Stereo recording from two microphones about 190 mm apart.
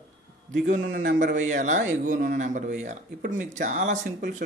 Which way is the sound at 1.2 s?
45° right (ahead or behind).